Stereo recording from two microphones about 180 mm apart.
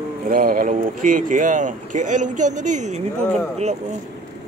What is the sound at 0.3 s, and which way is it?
Speech, 50° right (ahead or behind).